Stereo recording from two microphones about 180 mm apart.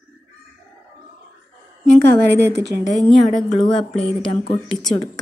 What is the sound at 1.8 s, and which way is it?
Speech, 65° right (ahead or behind).